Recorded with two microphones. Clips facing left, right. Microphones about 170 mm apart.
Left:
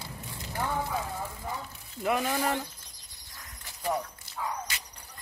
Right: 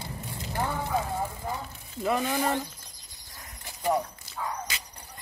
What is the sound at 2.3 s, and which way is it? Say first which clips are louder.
Speech: right 2 dB; 15° right (ahead or behind).